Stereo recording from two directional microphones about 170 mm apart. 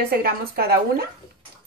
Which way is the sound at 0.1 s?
65° right (ahead or behind).